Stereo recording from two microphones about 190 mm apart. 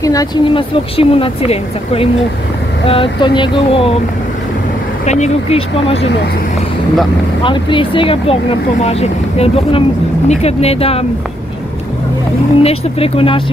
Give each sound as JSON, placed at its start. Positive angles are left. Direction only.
{"t": 0.0, "sound": "speech", "side_deg": 20}
{"t": 0.9, "sound": "speech", "side_deg": 30}
{"t": 5.0, "sound": "speech", "side_deg": 35}
{"t": 7.4, "sound": "speech", "side_deg": 25}
{"t": 12.6, "sound": "speech", "side_deg": 30}